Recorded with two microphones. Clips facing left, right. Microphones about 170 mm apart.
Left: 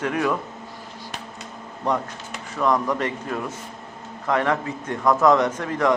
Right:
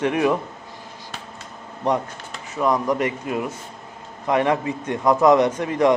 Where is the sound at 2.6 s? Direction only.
10° right (ahead or behind).